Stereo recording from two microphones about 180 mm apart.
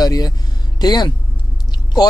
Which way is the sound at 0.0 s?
20° left (ahead or behind).